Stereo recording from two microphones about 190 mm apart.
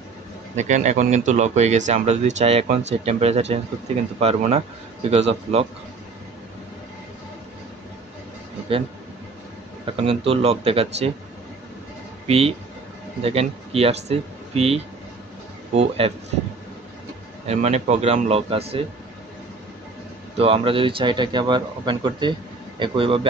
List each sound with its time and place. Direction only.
0.6 s speech: 40° right (ahead or behind)
9.9 s speech: 30° right (ahead or behind)
12.3 s speech: 30° right (ahead or behind)
17.5 s speech: 35° right (ahead or behind)
20.3 s speech: 30° right (ahead or behind)